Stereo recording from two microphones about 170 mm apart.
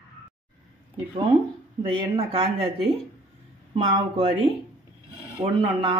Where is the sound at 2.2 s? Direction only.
35° right (ahead or behind).